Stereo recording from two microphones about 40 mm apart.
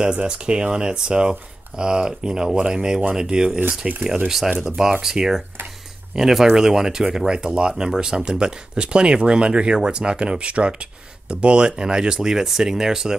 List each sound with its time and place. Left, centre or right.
0.0 s speech: right